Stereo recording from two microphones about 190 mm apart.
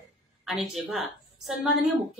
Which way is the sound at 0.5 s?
Centre (ahead or behind).